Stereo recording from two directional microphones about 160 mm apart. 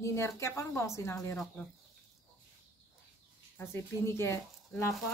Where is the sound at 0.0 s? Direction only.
15° left (ahead or behind).